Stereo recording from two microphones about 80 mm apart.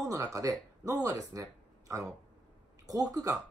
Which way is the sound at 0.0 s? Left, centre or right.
Right.